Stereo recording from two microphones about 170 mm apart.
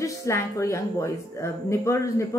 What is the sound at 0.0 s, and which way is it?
Speech, 20° left (ahead or behind).